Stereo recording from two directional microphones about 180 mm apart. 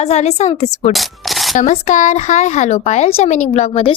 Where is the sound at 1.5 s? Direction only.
40° left (ahead or behind).